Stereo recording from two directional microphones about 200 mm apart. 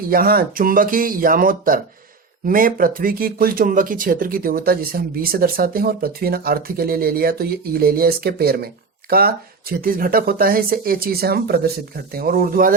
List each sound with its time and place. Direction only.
0.1 s speech: 45° right (ahead or behind)